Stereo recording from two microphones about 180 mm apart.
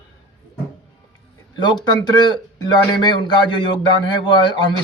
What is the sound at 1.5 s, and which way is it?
A man's voice, 25° left (ahead or behind).